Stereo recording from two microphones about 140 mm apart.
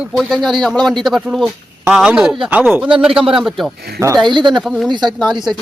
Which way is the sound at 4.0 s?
25° right (ahead or behind).